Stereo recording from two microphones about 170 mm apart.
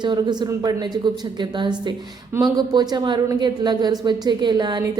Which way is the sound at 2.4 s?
25° right (ahead or behind).